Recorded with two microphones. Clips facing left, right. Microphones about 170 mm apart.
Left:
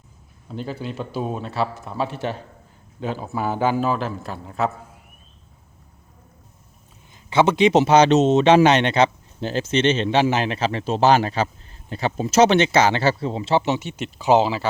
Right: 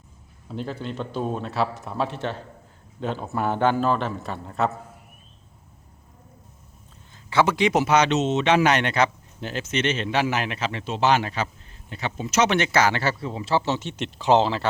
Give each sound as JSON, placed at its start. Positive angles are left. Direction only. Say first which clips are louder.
{"t": 0.4, "sound": "a man's voice", "louder": "left 1 dB", "side_deg": 0}
{"t": 7.3, "sound": "speech", "louder": "left 4 dB", "side_deg": 20}